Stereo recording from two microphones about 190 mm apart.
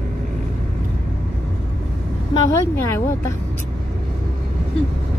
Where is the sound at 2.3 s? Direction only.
15° left (ahead or behind).